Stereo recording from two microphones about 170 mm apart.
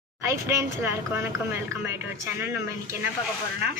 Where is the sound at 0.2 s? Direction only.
15° right (ahead or behind).